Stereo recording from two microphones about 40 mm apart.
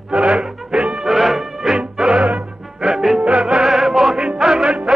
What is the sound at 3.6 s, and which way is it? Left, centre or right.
Music, centre.